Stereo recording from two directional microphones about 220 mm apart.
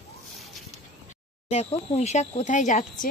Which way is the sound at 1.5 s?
30° left (ahead or behind).